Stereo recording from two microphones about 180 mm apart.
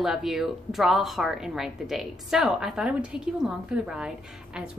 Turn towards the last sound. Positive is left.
turn(degrees=-5)  # may be behind; listen again after turning